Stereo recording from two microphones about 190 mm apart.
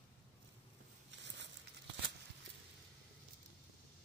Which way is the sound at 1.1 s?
70° right (ahead or behind).